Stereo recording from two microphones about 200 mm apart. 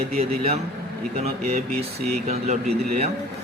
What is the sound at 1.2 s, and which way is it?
Speech, 30° right (ahead or behind).